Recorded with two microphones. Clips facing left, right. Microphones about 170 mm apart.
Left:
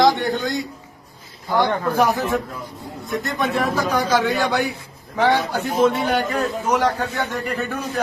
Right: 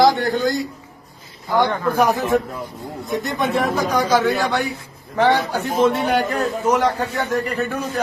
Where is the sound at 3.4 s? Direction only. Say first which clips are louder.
Right 1 dB; 20° right (ahead or behind).